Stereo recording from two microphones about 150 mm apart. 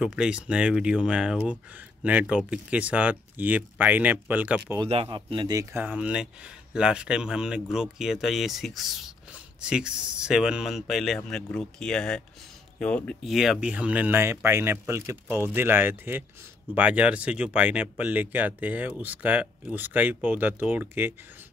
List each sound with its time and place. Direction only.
0.0 s speech: 5° right (ahead or behind)
4.8 s speech: 40° right (ahead or behind); by 5.9 s 20° right (ahead or behind)
5.9 s speech: 5° right (ahead or behind)